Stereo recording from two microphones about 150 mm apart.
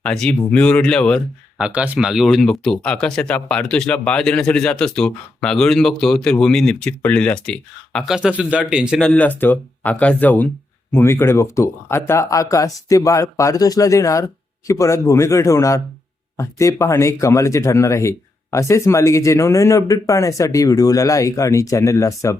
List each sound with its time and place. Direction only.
0.0 s speech: 5° left (ahead or behind)
1.5 s speech: 5° right (ahead or behind); by 22.4 s 20° left (ahead or behind)